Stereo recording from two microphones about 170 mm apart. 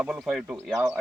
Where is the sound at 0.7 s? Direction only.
15° right (ahead or behind).